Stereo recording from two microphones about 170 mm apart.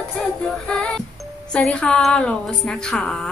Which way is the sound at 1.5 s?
5° left (ahead or behind).